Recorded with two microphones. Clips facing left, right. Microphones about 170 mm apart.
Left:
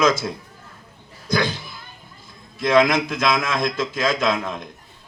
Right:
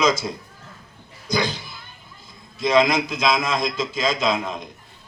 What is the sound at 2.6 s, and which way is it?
A man's voice, 55° left (ahead or behind).